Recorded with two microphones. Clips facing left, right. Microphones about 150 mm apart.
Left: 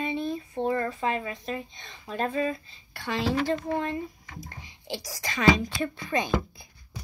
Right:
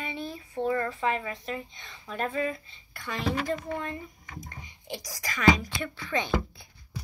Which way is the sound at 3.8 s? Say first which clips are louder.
Left 5 dB; 30° left (ahead or behind).